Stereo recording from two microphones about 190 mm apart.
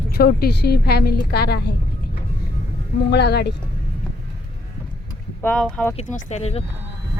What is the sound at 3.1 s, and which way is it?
Speech, 60° left (ahead or behind).